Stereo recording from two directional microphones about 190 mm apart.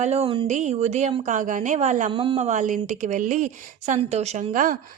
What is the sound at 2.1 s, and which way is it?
Speech, 30° right (ahead or behind).